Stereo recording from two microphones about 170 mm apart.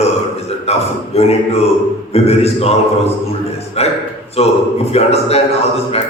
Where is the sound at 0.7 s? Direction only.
35° left (ahead or behind).